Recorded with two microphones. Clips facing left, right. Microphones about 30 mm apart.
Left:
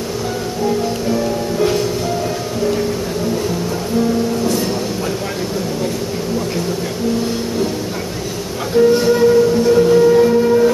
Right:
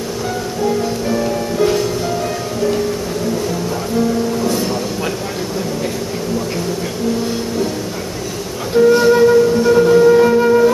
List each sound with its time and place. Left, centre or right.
1.6 s music: centre
8.7 s flute: centre
10.2 s flute: right